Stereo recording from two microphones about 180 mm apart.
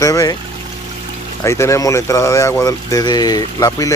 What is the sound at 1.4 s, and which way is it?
Speech, 15° left (ahead or behind).